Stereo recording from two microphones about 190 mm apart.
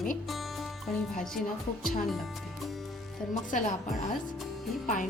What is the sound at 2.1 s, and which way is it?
Speech, centre (ahead or behind).